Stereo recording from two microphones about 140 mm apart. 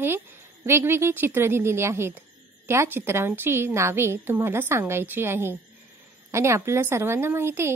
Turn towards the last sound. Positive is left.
turn(degrees=-15)  # may be behind; listen again after turning